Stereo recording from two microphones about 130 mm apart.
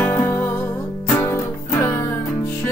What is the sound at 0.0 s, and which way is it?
Music, 15° left (ahead or behind).